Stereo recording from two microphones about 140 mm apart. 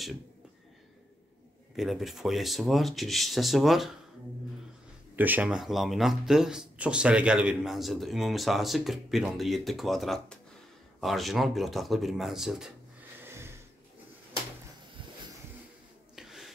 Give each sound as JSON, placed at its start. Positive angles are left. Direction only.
{"t": 1.8, "sound": "speech", "side_deg": 0}
{"t": 5.1, "sound": "speech", "side_deg": -10}
{"t": 13.2, "sound": "wheeze", "side_deg": -20}
{"t": 16.2, "sound": "a sound", "side_deg": 0}